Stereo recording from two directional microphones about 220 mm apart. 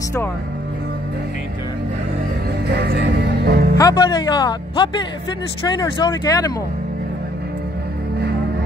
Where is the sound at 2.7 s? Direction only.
45° right (ahead or behind).